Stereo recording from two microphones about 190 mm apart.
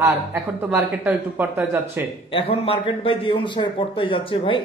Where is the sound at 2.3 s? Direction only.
30° left (ahead or behind).